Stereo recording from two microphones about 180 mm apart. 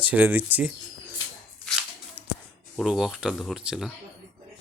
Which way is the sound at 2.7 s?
5° right (ahead or behind).